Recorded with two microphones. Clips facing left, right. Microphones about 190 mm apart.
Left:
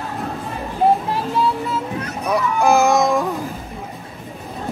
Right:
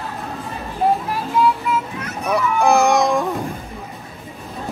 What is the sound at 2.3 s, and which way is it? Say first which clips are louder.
Speech: even; centre (ahead or behind).